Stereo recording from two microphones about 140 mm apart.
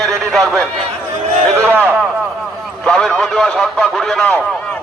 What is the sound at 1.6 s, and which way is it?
Speech, 15° right (ahead or behind).